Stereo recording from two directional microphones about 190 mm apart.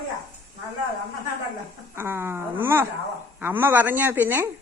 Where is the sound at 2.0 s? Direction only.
10° right (ahead or behind).